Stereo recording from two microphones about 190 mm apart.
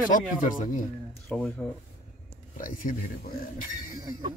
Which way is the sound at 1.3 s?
5° left (ahead or behind).